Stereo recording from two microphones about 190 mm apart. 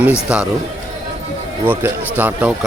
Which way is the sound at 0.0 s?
5° right (ahead or behind).